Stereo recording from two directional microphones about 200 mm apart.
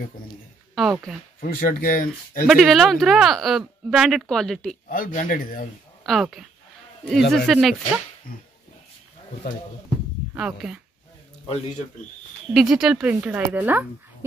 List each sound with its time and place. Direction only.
0.7 s speech: centre (ahead or behind)
1.4 s speech: 45° left (ahead or behind)
2.4 s speech: centre (ahead or behind)
4.8 s speech: 45° left (ahead or behind)
6.0 s speech: centre (ahead or behind)
7.2 s speech: 60° left (ahead or behind)
7.4 s speech: centre (ahead or behind)
8.3 s speech: 45° left (ahead or behind)
10.3 s speech: 5° right (ahead or behind)
12.5 s speech: 5° right (ahead or behind)